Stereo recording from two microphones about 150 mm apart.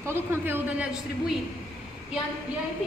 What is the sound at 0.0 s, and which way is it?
Speech, 15° right (ahead or behind).